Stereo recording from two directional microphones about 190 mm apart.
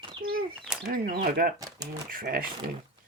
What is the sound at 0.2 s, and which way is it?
Bird, 50° right (ahead or behind).